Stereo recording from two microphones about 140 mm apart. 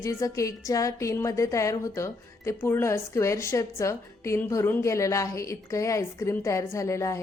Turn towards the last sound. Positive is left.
turn(degrees=20)  # may be behind; listen again after turning